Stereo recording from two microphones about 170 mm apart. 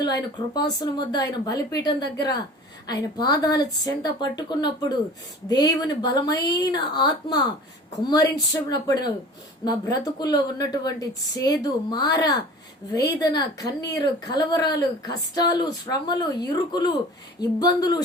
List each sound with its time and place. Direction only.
0.0 s a woman's voice: 25° left (ahead or behind)